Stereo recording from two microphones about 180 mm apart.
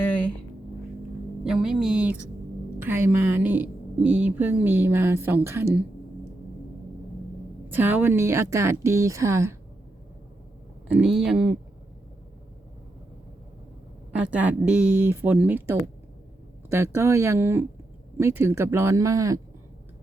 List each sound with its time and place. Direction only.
0.0 s a sound: 10° left (ahead or behind)
1.5 s a woman's voice: 5° right (ahead or behind)
7.7 s a woman's voice: 10° right (ahead or behind)
10.8 s speech: 5° right (ahead or behind)
14.2 s a woman's voice: 5° right (ahead or behind)